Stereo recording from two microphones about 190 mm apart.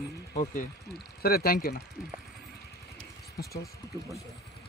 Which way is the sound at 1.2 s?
55° left (ahead or behind).